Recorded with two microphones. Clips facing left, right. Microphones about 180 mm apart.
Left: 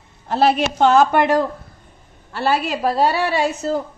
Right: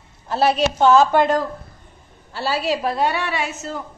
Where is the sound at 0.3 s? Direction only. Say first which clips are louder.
Left 1 dB; 60° left (ahead or behind).